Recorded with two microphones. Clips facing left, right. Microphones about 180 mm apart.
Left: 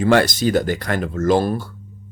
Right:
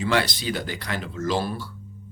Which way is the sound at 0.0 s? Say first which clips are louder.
Left 8 dB; 50° left (ahead or behind).